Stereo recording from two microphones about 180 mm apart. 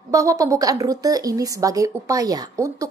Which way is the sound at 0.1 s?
20° right (ahead or behind).